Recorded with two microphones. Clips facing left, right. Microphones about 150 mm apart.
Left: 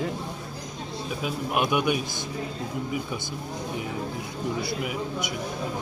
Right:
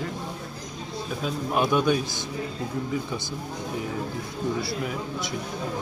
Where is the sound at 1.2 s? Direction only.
15° left (ahead or behind).